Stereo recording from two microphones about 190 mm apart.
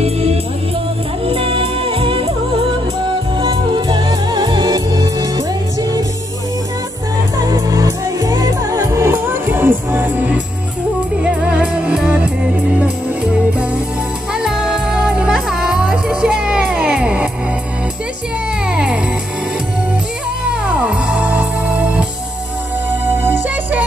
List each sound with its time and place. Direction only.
0.0 s music: 30° right (ahead or behind)
3.3 s music: 25° right (ahead or behind)
7.3 s music: 20° right (ahead or behind)
18.7 s music: 5° right (ahead or behind)
20.6 s music: 5° right (ahead or behind)
23.0 s music: 10° right (ahead or behind)